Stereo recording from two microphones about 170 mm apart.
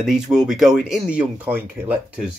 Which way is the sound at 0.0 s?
5° right (ahead or behind).